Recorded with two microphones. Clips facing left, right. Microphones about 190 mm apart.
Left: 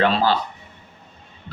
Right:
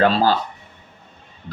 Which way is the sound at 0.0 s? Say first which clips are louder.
Right 2 dB; 40° right (ahead or behind).